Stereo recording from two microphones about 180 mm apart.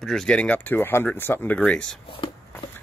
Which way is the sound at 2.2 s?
30° left (ahead or behind).